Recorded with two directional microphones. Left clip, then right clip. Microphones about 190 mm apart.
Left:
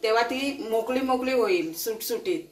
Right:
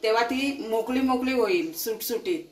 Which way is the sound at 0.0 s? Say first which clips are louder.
Even; 45° right (ahead or behind).